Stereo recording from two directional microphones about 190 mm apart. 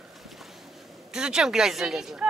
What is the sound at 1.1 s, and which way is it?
Speech, 5° right (ahead or behind).